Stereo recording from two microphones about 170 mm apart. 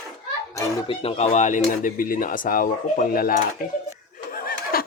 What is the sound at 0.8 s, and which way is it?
Speech, 35° left (ahead or behind).